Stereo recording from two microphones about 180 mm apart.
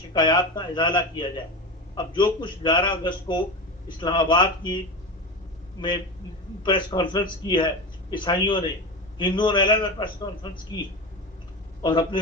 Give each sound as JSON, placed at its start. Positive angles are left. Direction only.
{"t": 0.1, "sound": "a man's voice", "side_deg": 25}
{"t": 6.6, "sound": "a man's voice", "side_deg": 25}